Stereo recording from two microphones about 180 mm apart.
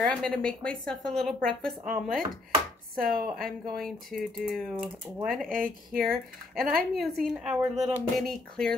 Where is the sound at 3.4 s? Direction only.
Centre (ahead or behind).